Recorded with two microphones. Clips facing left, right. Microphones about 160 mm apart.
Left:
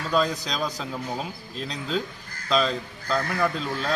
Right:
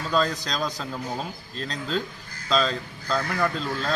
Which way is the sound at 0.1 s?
10° left (ahead or behind).